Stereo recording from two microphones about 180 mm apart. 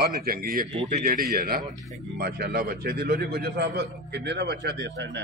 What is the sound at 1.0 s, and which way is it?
A man's voice, 55° right (ahead or behind).